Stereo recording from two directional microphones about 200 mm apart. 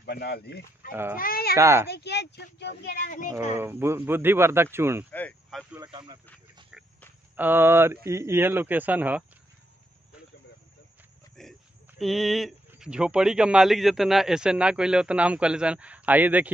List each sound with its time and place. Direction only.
0.0 s speech: 50° left (ahead or behind)
0.9 s speech: 10° right (ahead or behind)
1.2 s speech: 50° left (ahead or behind)
1.6 s speech: 15° right (ahead or behind)
1.9 s speech: 55° left (ahead or behind)
3.5 s speech: 10° right (ahead or behind)
5.1 s speech: 5° left (ahead or behind)
5.9 s speech: 25° right (ahead or behind)
6.7 s a sound: 5° right (ahead or behind)
7.3 s speech: 10° right (ahead or behind)
11.4 s a sound: centre (ahead or behind)
12.0 s speech: centre (ahead or behind)